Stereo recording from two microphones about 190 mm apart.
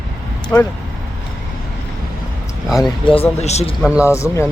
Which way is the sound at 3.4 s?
35° left (ahead or behind).